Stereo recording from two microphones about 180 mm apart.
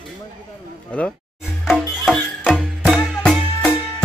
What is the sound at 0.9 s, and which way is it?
Music, 5° left (ahead or behind).